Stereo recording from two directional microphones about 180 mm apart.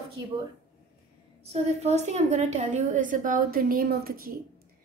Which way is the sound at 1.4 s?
35° right (ahead or behind).